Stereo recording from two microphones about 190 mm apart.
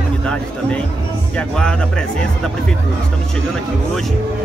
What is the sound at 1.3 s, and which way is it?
Speech, 5° left (ahead or behind).